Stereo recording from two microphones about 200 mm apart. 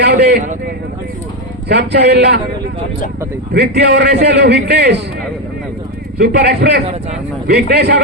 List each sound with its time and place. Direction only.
0.0 s a man's voice: 55° right (ahead or behind)
1.6 s a man's voice: 55° right (ahead or behind)
3.5 s a man's voice: 55° right (ahead or behind)
6.3 s a man's voice: 55° right (ahead or behind)